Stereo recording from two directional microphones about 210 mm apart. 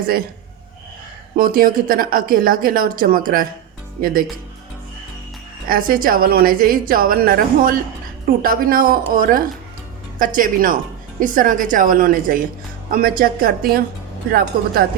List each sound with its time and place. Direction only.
1.4 s a woman's voice: 45° right (ahead or behind)
5.6 s a woman's voice: 45° right (ahead or behind)